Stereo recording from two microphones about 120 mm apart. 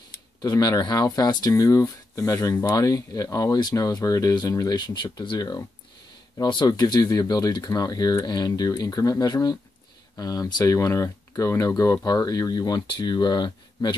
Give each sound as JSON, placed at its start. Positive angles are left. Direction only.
{"t": 0.4, "sound": "speech", "side_deg": 35}